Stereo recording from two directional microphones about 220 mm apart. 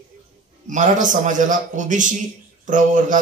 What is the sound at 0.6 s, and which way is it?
A man's voice, 35° right (ahead or behind).